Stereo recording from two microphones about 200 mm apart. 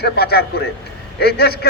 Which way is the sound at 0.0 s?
55° left (ahead or behind).